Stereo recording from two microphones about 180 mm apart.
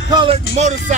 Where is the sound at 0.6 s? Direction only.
35° right (ahead or behind).